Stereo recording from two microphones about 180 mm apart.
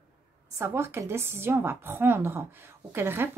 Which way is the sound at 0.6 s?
15° right (ahead or behind).